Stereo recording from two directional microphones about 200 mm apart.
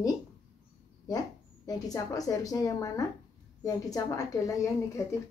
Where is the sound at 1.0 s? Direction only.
20° left (ahead or behind).